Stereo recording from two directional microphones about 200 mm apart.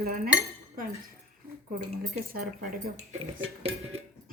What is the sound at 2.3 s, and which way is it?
Speech, 45° right (ahead or behind).